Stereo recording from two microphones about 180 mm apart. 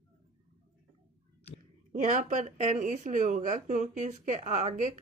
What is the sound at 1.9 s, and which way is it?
Speech, 45° right (ahead or behind).